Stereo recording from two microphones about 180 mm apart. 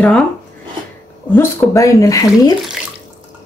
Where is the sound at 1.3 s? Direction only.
15° left (ahead or behind).